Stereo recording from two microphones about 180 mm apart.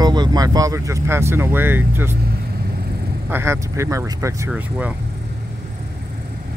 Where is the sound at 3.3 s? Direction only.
15° right (ahead or behind).